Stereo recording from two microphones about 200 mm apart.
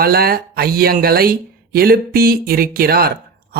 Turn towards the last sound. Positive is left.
turn(degrees=-50)  # may be behind; listen again after turning